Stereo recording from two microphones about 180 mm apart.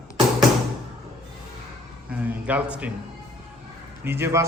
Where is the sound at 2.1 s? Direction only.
10° right (ahead or behind).